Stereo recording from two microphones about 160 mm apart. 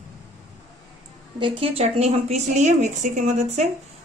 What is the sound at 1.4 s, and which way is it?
A woman's voice, 35° right (ahead or behind).